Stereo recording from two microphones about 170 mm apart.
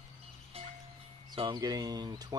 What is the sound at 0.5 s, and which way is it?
Music, 35° right (ahead or behind).